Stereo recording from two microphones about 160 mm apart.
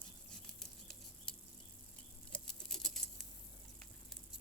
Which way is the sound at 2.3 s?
5° left (ahead or behind).